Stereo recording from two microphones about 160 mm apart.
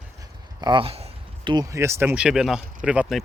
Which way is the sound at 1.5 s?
20° right (ahead or behind).